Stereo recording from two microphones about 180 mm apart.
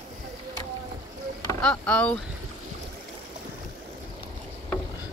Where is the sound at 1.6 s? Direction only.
5° left (ahead or behind).